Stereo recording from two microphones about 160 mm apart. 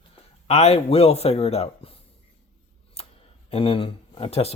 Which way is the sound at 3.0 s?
40° left (ahead or behind).